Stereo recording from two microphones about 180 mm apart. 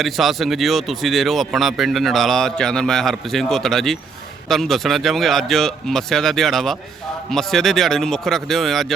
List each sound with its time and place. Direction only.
0.0 s speech: centre (ahead or behind)